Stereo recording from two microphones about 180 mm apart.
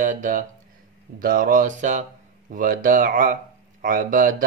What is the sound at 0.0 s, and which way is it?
Speech, 45° right (ahead or behind).